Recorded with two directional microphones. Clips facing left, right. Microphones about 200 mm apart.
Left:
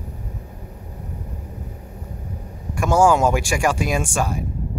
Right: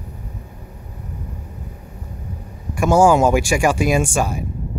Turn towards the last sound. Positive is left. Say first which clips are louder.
# right 4 dB
turn(degrees=-5)  # may be behind; listen again after turning